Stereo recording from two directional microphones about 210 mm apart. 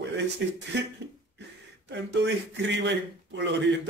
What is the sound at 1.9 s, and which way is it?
Speech, 55° right (ahead or behind).